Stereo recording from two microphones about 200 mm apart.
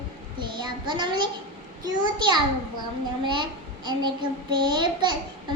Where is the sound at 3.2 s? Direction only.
25° right (ahead or behind).